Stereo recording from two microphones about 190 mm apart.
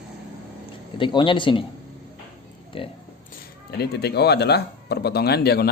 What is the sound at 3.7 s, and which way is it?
A man's voice, 60° left (ahead or behind).